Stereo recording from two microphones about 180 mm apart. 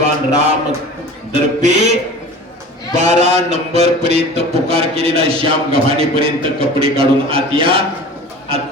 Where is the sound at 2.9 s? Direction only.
40° right (ahead or behind).